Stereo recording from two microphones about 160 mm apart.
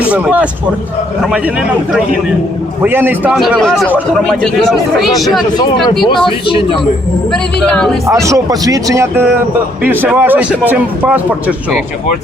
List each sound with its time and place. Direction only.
0.0 s speech: 10° right (ahead or behind)
2.8 s speech: 10° right (ahead or behind)
3.8 s speech: 10° right (ahead or behind)
4.2 s speech: 5° left (ahead or behind)
6.2 s speech: 30° left (ahead or behind)
7.6 s speech: 5° left (ahead or behind)
8.0 s speech: 20° right (ahead or behind)